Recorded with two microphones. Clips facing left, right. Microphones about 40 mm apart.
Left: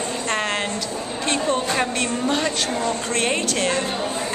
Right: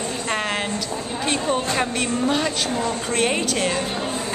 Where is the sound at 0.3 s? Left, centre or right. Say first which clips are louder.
Left 1 dB; centre.